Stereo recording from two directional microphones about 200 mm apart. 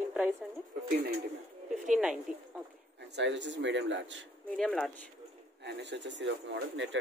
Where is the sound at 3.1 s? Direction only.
65° right (ahead or behind).